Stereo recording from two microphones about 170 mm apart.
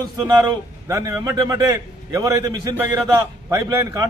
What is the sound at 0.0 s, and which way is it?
A man's voice, 25° right (ahead or behind).